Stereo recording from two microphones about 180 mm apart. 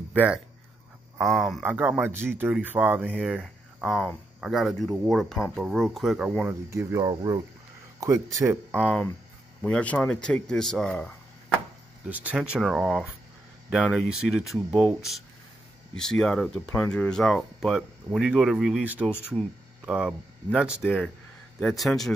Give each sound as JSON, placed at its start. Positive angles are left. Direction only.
{"t": 0.1, "sound": "speech", "side_deg": -5}
{"t": 6.7, "sound": "speech", "side_deg": -15}
{"t": 9.6, "sound": "speech", "side_deg": 5}
{"t": 12.1, "sound": "speech", "side_deg": -10}